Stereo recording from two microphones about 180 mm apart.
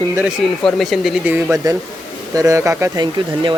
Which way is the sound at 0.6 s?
Centre (ahead or behind).